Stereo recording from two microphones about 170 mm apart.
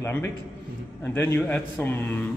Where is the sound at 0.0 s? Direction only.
15° left (ahead or behind).